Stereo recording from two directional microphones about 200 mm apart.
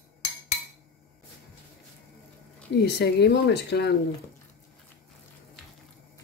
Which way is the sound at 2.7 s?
55° left (ahead or behind).